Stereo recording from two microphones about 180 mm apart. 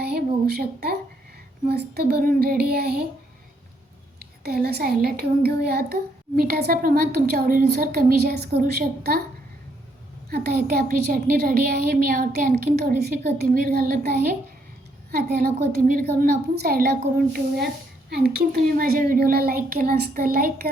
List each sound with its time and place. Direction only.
0.0 s a sound: 60° right (ahead or behind)
1.6 s a child's voice: 60° right (ahead or behind)
4.2 s a child's voice: 60° right (ahead or behind)
10.2 s a child's voice: 60° right (ahead or behind)